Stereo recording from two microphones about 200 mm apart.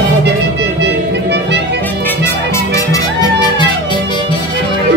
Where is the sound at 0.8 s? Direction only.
60° right (ahead or behind).